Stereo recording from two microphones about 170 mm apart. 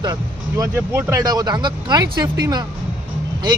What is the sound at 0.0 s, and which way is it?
Speech, 25° right (ahead or behind).